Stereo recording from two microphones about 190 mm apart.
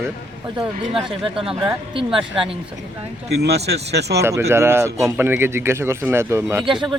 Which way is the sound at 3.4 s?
60° right (ahead or behind).